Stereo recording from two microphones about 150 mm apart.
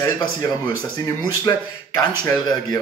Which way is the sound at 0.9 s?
25° left (ahead or behind).